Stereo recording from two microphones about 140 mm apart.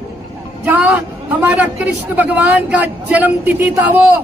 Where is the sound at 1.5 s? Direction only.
10° right (ahead or behind).